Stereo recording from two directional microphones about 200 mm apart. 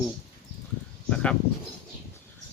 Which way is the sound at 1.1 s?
5° left (ahead or behind).